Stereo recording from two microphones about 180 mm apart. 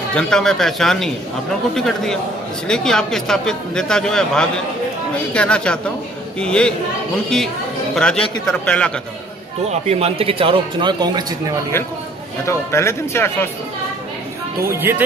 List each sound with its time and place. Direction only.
0.1 s speech: 5° left (ahead or behind)
9.7 s speech: 35° right (ahead or behind)
12.4 s speech: 15° left (ahead or behind)
14.7 s speech: 15° right (ahead or behind)